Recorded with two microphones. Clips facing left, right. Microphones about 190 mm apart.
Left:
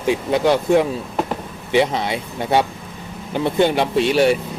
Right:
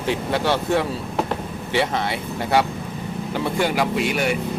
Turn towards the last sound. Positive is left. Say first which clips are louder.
# left 6 dB
turn(degrees=30)  # may be behind; listen again after turning